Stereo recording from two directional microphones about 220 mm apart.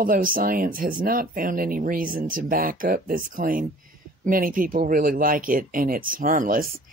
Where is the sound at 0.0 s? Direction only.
40° right (ahead or behind).